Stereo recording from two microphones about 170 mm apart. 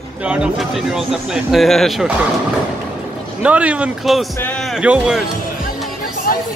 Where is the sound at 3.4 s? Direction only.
5° right (ahead or behind).